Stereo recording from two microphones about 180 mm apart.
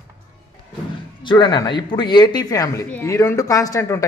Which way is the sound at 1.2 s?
25° left (ahead or behind).